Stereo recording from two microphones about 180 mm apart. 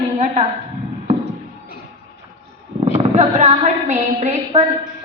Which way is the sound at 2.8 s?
30° right (ahead or behind).